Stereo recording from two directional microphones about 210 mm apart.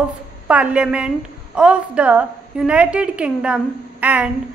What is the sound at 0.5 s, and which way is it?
A woman's voice, 5° right (ahead or behind).